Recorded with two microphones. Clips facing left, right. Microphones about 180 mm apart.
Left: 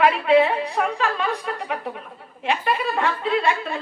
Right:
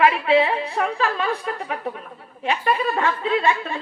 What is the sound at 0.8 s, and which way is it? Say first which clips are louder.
A woman's voice: right 1 dB; 35° right (ahead or behind).